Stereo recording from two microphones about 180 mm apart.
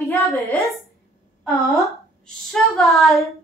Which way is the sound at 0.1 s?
15° left (ahead or behind).